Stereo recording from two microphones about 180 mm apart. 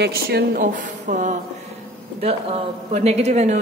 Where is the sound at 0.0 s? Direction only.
65° right (ahead or behind); by 1.3 s 45° right (ahead or behind).